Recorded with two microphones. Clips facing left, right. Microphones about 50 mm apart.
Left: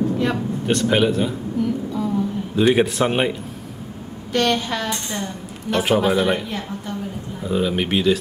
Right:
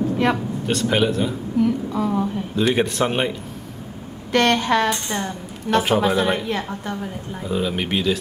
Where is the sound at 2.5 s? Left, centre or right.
Centre.